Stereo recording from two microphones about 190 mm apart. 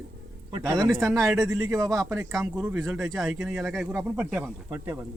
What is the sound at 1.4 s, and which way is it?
A man's voice, 15° right (ahead or behind).